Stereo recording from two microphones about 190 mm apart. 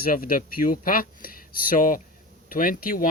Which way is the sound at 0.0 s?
50° left (ahead or behind).